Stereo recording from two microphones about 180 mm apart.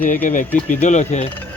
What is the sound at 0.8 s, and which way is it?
Speech, 40° left (ahead or behind).